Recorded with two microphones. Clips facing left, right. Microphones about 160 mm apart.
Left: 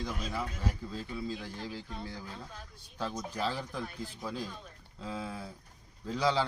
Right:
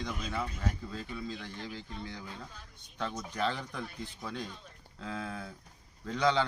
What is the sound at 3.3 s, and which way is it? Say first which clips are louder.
Speech: right 2 dB; 5° left (ahead or behind).